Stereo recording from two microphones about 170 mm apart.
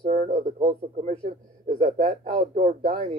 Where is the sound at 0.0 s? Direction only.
35° right (ahead or behind).